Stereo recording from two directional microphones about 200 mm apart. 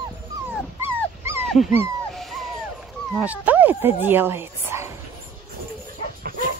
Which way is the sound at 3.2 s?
10° right (ahead or behind).